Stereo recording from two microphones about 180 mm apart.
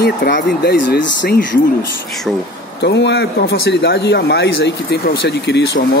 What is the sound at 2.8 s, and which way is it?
Speech, 75° left (ahead or behind).